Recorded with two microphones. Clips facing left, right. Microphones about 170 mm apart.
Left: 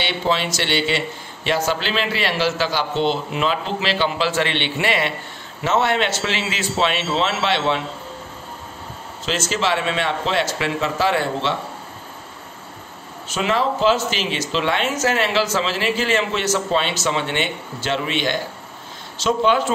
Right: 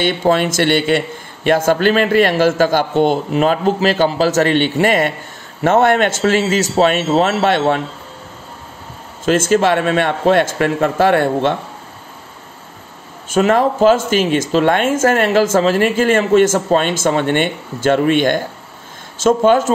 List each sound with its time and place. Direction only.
0.0 s a man's voice: 50° right (ahead or behind)
9.2 s a man's voice: 50° right (ahead or behind)
13.3 s a man's voice: 50° right (ahead or behind)